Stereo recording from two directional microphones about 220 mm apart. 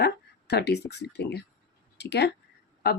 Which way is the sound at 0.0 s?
50° left (ahead or behind).